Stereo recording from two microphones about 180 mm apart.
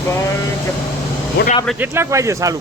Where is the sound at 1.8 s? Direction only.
15° right (ahead or behind).